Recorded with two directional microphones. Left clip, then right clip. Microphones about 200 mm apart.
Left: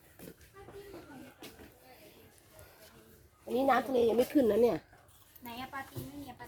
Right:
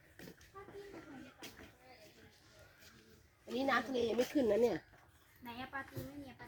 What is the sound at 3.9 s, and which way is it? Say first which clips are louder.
Speech: left 7 dB; 50° left (ahead or behind).